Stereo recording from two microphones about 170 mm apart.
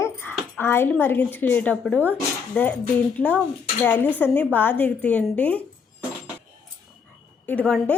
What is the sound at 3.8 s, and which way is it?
A woman's voice, 10° left (ahead or behind).